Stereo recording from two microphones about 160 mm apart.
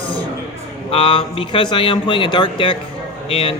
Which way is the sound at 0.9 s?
35° left (ahead or behind).